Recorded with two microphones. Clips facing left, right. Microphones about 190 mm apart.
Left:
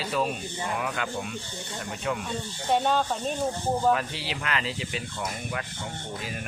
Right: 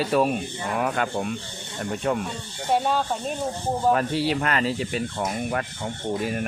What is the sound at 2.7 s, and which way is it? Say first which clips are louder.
Speech: right 1 dB; 5° right (ahead or behind).